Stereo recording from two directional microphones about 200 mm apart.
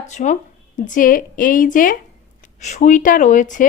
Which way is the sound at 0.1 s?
35° left (ahead or behind).